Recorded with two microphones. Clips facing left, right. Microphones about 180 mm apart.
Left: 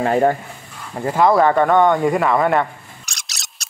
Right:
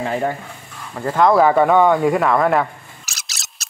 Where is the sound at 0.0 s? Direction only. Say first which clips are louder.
Left 5 dB; 55° left (ahead or behind).